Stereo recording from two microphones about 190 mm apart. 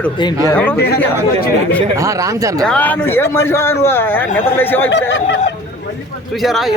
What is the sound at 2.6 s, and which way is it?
Speech, 5° left (ahead or behind).